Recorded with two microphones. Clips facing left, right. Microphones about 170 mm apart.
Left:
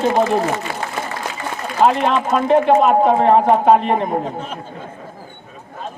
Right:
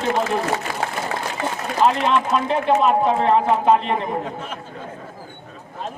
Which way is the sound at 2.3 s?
40° left (ahead or behind).